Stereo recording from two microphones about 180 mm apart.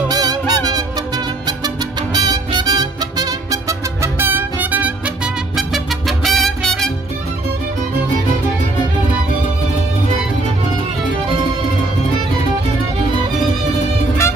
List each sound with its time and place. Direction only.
0.1 s music: 20° right (ahead or behind); by 6.9 s centre (ahead or behind)